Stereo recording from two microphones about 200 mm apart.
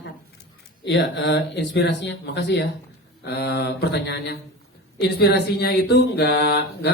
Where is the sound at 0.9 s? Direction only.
60° left (ahead or behind).